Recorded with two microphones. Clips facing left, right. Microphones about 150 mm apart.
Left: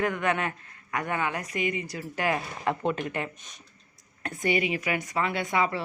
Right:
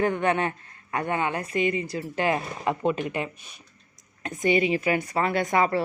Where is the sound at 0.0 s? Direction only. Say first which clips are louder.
Right 4 dB; 30° right (ahead or behind).